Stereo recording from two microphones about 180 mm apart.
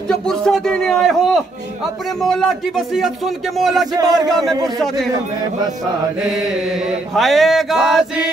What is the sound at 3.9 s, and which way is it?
Speech, 20° right (ahead or behind).